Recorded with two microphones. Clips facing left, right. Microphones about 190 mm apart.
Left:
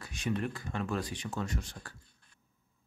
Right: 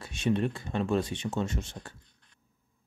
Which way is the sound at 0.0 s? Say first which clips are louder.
Right 6 dB; 25° right (ahead or behind).